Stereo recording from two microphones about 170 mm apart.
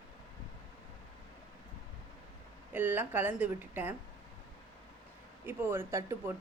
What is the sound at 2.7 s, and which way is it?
Speech, 10° right (ahead or behind).